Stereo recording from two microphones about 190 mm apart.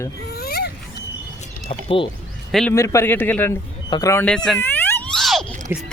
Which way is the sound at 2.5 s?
Centre (ahead or behind).